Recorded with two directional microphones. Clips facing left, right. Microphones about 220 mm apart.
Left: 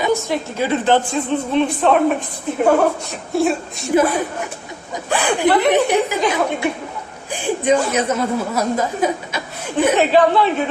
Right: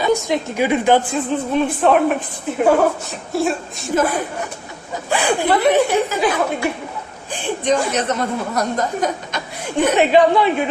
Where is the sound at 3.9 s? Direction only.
10° left (ahead or behind).